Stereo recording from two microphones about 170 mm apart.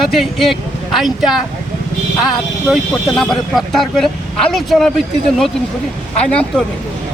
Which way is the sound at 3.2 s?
Centre (ahead or behind).